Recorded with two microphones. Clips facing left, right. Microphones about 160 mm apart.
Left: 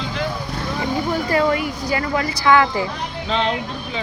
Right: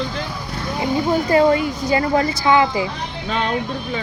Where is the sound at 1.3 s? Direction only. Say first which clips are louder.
Right 4 dB; 25° right (ahead or behind).